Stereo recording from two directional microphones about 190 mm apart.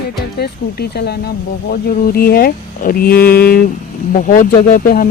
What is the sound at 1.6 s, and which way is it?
Speech, 50° left (ahead or behind).